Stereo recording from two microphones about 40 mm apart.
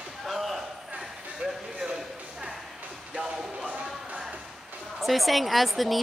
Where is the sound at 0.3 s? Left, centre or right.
Centre.